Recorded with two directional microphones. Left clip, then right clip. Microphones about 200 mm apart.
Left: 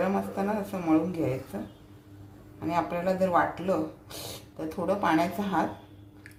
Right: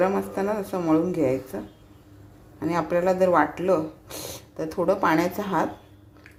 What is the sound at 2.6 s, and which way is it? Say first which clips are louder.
Speech: right 5 dB; 40° right (ahead or behind).